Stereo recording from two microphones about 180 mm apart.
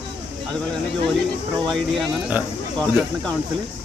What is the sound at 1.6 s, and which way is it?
Speech, centre (ahead or behind).